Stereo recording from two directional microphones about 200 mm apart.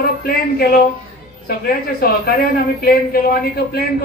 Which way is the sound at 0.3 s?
50° left (ahead or behind).